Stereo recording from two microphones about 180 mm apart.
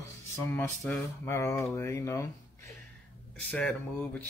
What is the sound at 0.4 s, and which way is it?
Speech, 10° left (ahead or behind).